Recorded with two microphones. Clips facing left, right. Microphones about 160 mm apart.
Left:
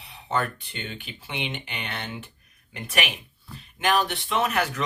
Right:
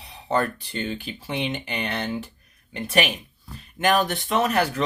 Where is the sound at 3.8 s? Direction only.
45° right (ahead or behind).